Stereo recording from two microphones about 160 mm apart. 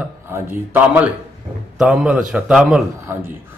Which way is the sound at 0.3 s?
15° right (ahead or behind).